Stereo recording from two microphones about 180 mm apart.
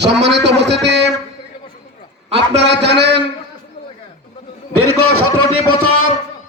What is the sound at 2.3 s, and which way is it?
Speech, 75° right (ahead or behind).